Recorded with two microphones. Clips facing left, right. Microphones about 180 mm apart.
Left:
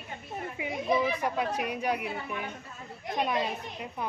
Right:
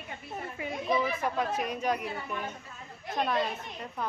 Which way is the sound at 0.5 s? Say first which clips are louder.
Left 2 dB; 10° left (ahead or behind).